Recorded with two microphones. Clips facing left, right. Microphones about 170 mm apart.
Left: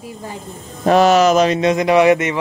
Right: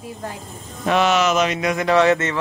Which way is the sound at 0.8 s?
40° left (ahead or behind).